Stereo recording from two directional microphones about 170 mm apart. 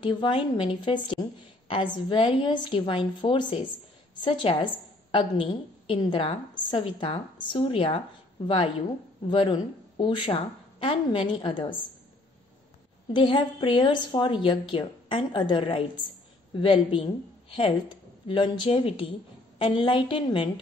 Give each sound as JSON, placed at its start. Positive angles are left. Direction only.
{"t": 0.0, "sound": "a woman's voice", "side_deg": 30}
{"t": 13.1, "sound": "a woman's voice", "side_deg": 30}
{"t": 18.2, "sound": "a woman's voice", "side_deg": 30}